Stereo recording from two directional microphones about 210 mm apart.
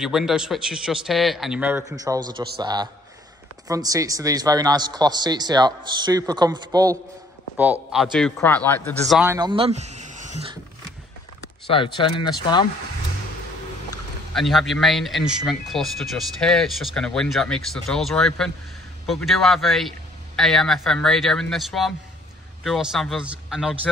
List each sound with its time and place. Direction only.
0.0 s a man's voice: centre (ahead or behind); by 7.0 s 15° right (ahead or behind)
7.5 s speech: 5° right (ahead or behind); by 9.2 s 10° left (ahead or behind)
9.2 s a man's voice: 15° right (ahead or behind); by 10.4 s 35° right (ahead or behind)
11.7 s speech: 25° left (ahead or behind)
14.3 s speech: centre (ahead or behind)